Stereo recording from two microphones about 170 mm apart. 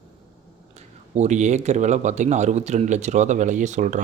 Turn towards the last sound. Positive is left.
turn(degrees=-45)  # may be behind; listen again after turning